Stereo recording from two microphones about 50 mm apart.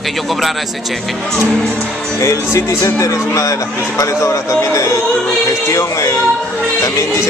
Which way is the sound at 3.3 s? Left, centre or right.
Left.